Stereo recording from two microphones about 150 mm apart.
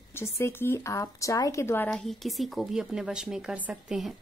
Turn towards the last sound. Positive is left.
turn(degrees=0)  # may be behind; listen again after turning